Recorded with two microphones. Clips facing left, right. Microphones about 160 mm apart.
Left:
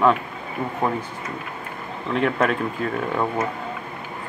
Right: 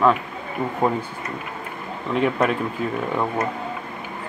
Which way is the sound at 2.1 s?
5° right (ahead or behind).